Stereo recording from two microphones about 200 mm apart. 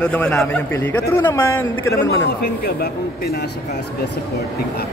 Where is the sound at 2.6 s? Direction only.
50° left (ahead or behind).